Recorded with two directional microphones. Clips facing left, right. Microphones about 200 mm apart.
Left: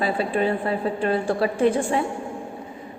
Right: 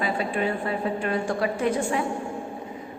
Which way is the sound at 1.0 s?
30° left (ahead or behind).